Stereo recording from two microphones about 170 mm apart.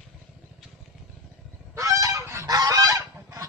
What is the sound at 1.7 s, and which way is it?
Goose, 20° right (ahead or behind).